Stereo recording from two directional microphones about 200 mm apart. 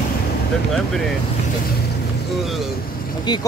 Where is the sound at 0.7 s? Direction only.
Centre (ahead or behind).